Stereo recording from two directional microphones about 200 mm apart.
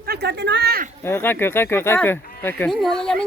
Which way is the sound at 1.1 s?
10° left (ahead or behind).